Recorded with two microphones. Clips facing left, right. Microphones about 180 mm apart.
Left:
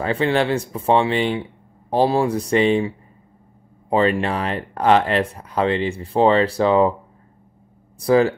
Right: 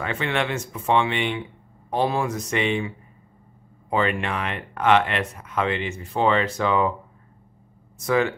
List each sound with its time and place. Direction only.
0.0 s speech: 35° left (ahead or behind)
3.9 s speech: 35° left (ahead or behind)
8.0 s speech: 35° left (ahead or behind)